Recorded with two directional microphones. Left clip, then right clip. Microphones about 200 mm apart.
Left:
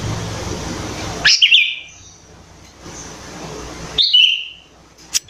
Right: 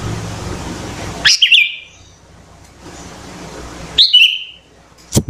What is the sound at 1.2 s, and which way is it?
Bird, 20° right (ahead or behind).